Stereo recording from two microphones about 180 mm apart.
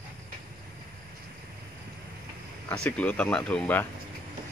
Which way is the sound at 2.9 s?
5° left (ahead or behind).